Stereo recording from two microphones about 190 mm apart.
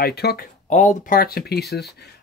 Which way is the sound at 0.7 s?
40° left (ahead or behind).